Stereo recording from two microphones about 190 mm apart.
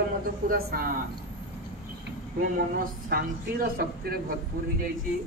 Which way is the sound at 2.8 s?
50° right (ahead or behind).